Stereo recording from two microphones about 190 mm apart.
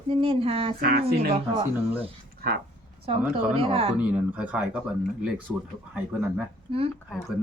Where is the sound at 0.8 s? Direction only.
55° right (ahead or behind).